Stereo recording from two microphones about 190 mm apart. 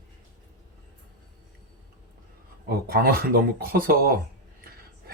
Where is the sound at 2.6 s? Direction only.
50° right (ahead or behind).